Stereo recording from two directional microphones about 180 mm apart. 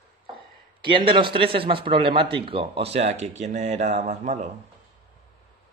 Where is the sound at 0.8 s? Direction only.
25° right (ahead or behind).